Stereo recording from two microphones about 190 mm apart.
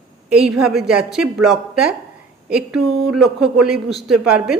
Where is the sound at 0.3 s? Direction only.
5° right (ahead or behind).